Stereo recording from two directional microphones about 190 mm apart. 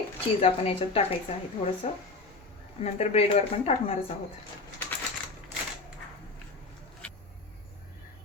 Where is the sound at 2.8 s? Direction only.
35° left (ahead or behind).